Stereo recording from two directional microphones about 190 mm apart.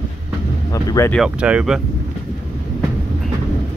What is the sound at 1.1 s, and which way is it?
Speech, 5° right (ahead or behind).